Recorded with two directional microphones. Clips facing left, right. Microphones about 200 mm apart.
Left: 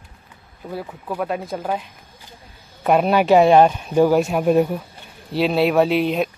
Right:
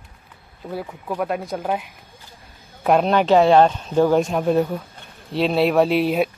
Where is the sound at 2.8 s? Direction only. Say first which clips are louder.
Left 1 dB; 5° left (ahead or behind).